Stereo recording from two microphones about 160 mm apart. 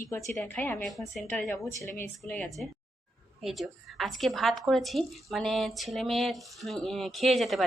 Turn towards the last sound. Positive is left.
turn(degrees=0)  # may be behind; listen again after turning